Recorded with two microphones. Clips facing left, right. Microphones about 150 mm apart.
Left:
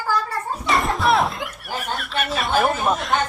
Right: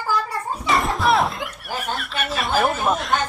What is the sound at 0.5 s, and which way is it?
Speech, centre (ahead or behind).